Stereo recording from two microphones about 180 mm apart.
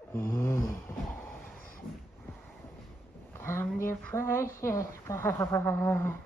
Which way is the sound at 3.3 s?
15° left (ahead or behind).